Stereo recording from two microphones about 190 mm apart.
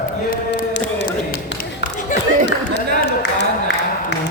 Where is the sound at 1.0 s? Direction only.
60° left (ahead or behind).